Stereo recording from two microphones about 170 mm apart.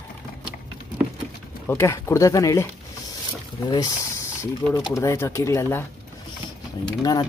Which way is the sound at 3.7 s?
20° left (ahead or behind).